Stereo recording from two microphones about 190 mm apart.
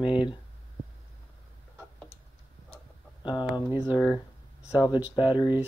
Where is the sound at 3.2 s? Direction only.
25° left (ahead or behind).